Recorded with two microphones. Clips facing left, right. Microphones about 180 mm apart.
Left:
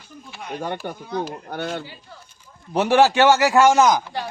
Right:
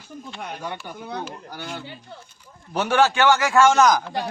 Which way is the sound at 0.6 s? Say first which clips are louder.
Left 9 dB; 50° left (ahead or behind).